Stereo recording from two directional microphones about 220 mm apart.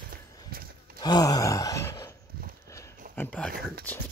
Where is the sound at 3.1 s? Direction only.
5° left (ahead or behind).